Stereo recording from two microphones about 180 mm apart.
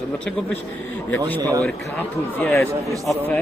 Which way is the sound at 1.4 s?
20° right (ahead or behind).